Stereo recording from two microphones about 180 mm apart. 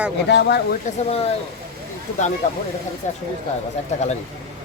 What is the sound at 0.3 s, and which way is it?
Speech, 70° left (ahead or behind).